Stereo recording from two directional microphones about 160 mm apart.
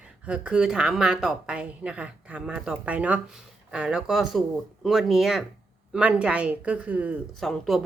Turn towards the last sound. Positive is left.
turn(degrees=0)  # may be behind; listen again after turning